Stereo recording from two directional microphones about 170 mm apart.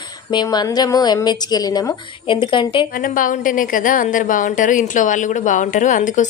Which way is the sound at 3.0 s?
50° left (ahead or behind).